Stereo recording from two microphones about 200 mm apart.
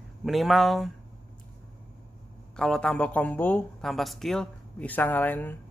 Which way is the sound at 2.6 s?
5° left (ahead or behind).